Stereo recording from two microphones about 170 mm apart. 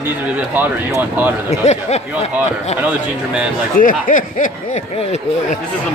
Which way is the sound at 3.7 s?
55° left (ahead or behind).